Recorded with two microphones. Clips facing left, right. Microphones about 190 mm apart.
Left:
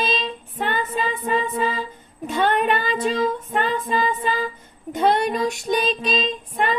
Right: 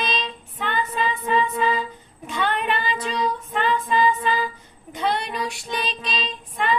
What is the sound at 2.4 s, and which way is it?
Female singing, 45° left (ahead or behind).